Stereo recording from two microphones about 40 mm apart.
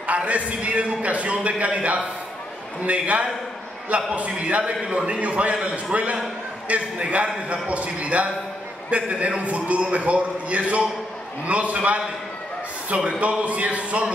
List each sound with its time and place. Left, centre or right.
0.0 s a man's voice: right
13.2 s a man's voice: right